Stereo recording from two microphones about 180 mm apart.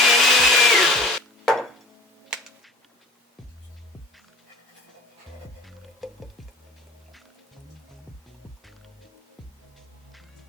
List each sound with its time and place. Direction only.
0.0 s wood: centre (ahead or behind)
6.0 s music: centre (ahead or behind)